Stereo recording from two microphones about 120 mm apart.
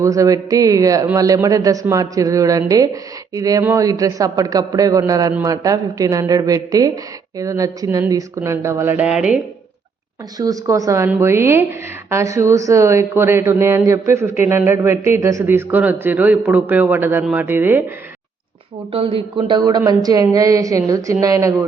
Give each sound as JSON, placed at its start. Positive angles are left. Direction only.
{"t": 0.0, "sound": "speech", "side_deg": -25}
{"t": 9.0, "sound": "speech", "side_deg": -5}
{"t": 10.3, "sound": "speech", "side_deg": -30}
{"t": 18.9, "sound": "speech", "side_deg": -50}
{"t": 19.5, "sound": "speech", "side_deg": -35}